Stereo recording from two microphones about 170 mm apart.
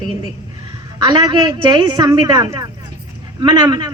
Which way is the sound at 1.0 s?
25° right (ahead or behind).